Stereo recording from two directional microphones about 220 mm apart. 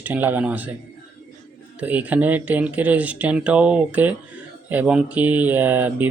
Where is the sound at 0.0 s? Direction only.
10° right (ahead or behind).